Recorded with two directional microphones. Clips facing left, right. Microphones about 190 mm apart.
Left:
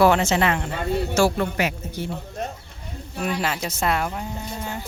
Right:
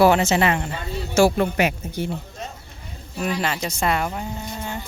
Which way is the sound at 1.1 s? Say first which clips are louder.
Right 6 dB; 15° right (ahead or behind).